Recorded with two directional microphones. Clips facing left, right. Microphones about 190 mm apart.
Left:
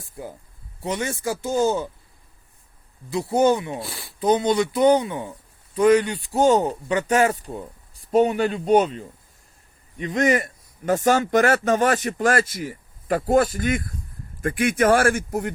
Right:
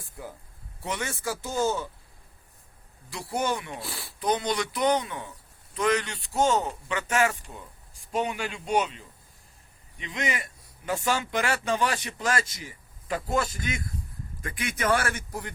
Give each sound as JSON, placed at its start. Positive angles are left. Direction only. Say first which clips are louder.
{"t": 0.9, "sound": "speech", "louder": "left 6 dB", "side_deg": 20}
{"t": 3.1, "sound": "speech", "louder": "left 10 dB", "side_deg": 25}
{"t": 3.8, "sound": "speech", "louder": "left 2 dB", "side_deg": 0}
{"t": 4.2, "sound": "speech", "louder": "left 8 dB", "side_deg": 25}